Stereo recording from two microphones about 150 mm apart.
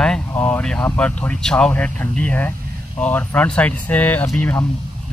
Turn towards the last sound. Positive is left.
turn(degrees=10)  # may be behind; listen again after turning